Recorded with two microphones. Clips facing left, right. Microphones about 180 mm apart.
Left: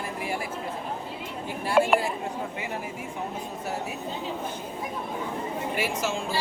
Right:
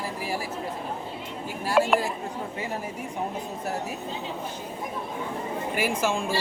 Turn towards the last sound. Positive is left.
turn(degrees=-50)  # may be behind; listen again after turning